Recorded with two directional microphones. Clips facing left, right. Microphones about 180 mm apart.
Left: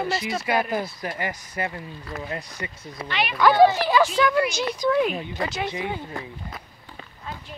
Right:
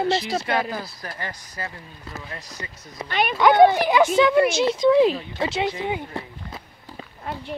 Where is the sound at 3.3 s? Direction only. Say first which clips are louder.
Right 2 dB; 20° right (ahead or behind).